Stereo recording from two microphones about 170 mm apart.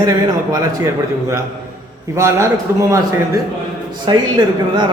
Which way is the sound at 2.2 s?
15° right (ahead or behind).